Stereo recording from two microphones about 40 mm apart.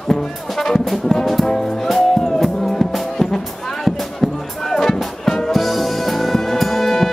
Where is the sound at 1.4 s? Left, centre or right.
Centre.